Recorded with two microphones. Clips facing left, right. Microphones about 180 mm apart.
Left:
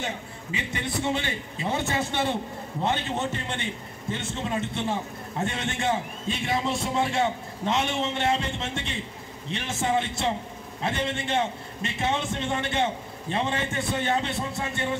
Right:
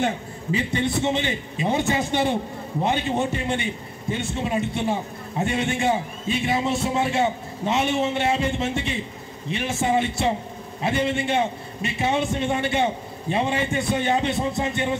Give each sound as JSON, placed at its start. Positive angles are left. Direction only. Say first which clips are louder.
{"t": 0.5, "sound": "a man's voice", "louder": "right 8 dB", "side_deg": -35}